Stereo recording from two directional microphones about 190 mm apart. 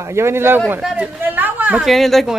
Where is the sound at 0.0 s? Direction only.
15° right (ahead or behind).